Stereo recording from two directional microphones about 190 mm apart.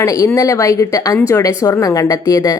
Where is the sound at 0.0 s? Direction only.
15° left (ahead or behind).